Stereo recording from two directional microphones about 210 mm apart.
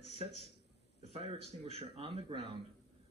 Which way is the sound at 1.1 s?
30° right (ahead or behind).